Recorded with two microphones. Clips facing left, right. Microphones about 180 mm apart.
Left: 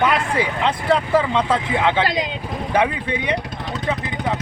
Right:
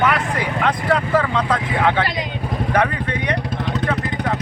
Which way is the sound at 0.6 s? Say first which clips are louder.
Right 2 dB; 20° left (ahead or behind).